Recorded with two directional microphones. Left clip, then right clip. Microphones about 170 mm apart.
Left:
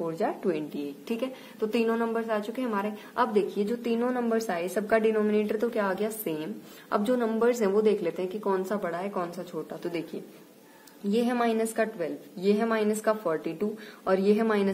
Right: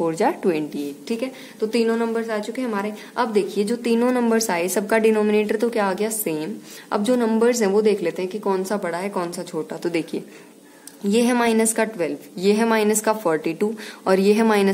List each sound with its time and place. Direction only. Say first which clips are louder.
0.0 s a woman's voice: right 9 dB; 35° right (ahead or behind)
1.0 s a woman's voice: right 4 dB; centre (ahead or behind)
3.3 s a woman's voice: right 6 dB; 25° right (ahead or behind)
11.1 s a woman's voice: right 7 dB; 35° right (ahead or behind)